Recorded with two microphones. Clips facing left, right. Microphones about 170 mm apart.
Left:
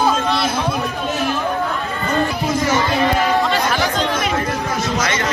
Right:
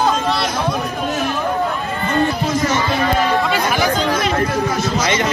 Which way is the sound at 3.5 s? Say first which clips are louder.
Right 1 dB; 10° right (ahead or behind).